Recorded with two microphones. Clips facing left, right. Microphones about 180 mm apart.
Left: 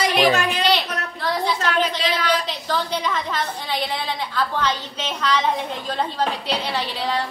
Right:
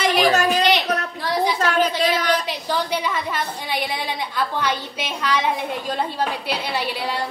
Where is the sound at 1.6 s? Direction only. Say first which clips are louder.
Right 3 dB; 45° right (ahead or behind).